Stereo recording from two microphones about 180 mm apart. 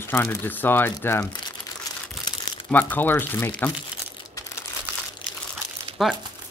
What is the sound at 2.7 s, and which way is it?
Speech, 10° left (ahead or behind).